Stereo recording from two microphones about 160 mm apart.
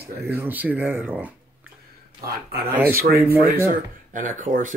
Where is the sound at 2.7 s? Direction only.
10° right (ahead or behind).